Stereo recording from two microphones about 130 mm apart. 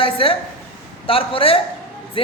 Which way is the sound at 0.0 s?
45° left (ahead or behind).